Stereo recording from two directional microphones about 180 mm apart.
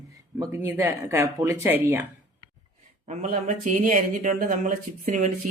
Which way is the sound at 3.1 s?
45° right (ahead or behind).